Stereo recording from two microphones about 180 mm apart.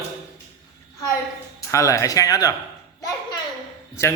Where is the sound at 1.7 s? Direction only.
15° left (ahead or behind).